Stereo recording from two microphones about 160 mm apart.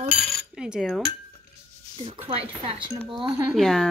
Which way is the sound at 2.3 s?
35° right (ahead or behind).